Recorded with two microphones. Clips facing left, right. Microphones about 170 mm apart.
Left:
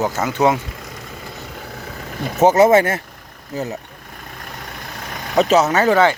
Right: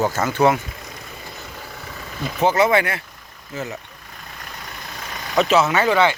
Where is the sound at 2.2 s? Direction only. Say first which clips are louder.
Left 5 dB; 45° left (ahead or behind).